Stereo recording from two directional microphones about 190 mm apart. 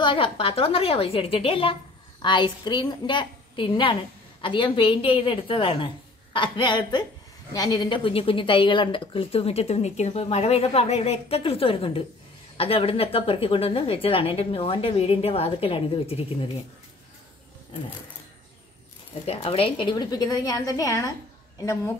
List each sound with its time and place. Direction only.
0.0 s a woman's voice: 25° left (ahead or behind)
19.2 s a woman's voice: 30° left (ahead or behind)